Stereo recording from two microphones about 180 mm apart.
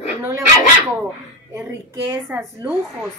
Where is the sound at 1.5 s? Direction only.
15° right (ahead or behind).